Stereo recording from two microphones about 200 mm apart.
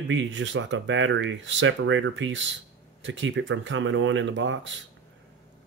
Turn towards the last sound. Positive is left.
turn(degrees=-65)  # may be behind; listen again after turning